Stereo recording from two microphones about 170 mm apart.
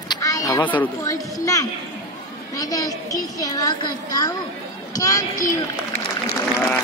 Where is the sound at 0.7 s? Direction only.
15° left (ahead or behind).